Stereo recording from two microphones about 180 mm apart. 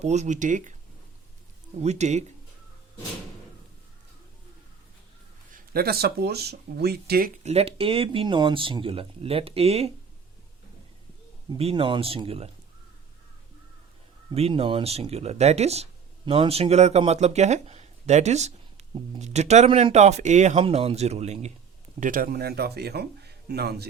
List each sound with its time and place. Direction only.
0.0 s speech: 40° right (ahead or behind)
1.8 s speech: 40° right (ahead or behind)
5.7 s speech: 60° right (ahead or behind)
7.4 s speech: 35° right (ahead or behind)
11.5 s speech: 30° right (ahead or behind)
14.3 s speech: 30° right (ahead or behind)
22.0 s speech: 50° right (ahead or behind)